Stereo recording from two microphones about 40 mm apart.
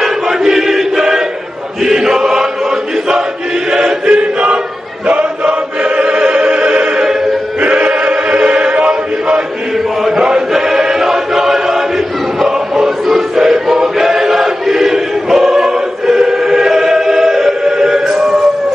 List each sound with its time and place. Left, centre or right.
0.0 s choir: centre
1.9 s chant: centre
3.7 s choir: centre
5.0 s music: right
10.0 s choir: centre
12.7 s choir: centre